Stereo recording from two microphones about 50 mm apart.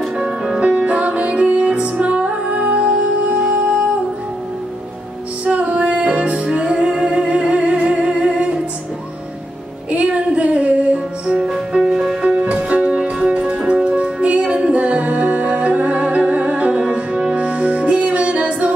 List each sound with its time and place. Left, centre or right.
0.2 s music: centre
0.6 s music: right
5.4 s music: right
9.8 s female singing: right
11.3 s music: centre; by 18.7 s right